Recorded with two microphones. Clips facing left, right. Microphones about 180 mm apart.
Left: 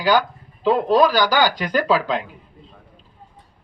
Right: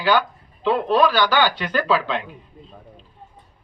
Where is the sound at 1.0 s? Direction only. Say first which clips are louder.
Left 1 dB; 40° left (ahead or behind).